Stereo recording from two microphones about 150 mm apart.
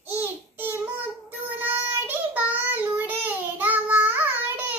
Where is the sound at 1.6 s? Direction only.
10° right (ahead or behind).